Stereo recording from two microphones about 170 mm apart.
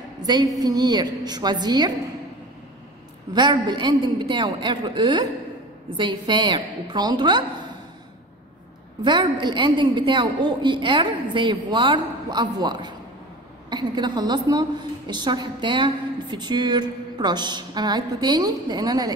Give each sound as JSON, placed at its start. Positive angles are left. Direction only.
{"t": 0.3, "sound": "a woman's voice", "side_deg": -20}
{"t": 3.3, "sound": "a woman's voice", "side_deg": -25}
{"t": 9.0, "sound": "a woman's voice", "side_deg": -25}